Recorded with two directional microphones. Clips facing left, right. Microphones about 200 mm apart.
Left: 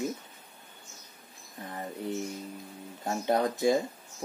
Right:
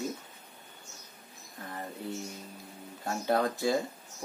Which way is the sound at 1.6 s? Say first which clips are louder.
Left 2 dB; 20° left (ahead or behind).